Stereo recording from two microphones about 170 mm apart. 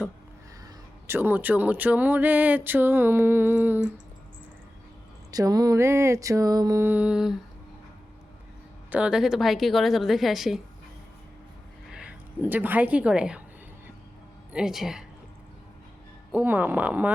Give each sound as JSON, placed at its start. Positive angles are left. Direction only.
{"t": 1.0, "sound": "speech", "side_deg": -10}
{"t": 5.3, "sound": "speech", "side_deg": -20}
{"t": 8.9, "sound": "a woman's voice", "side_deg": -5}
{"t": 11.9, "sound": "speech", "side_deg": -5}
{"t": 14.5, "sound": "a woman's voice", "side_deg": -5}
{"t": 16.3, "sound": "speech", "side_deg": -10}